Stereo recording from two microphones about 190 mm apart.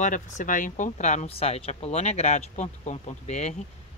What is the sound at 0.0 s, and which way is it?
Speech, 40° left (ahead or behind).